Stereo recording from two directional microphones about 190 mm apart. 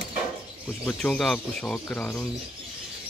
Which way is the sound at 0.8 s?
5° left (ahead or behind).